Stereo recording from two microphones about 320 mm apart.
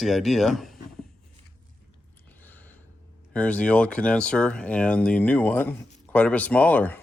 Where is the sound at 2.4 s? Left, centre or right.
Centre.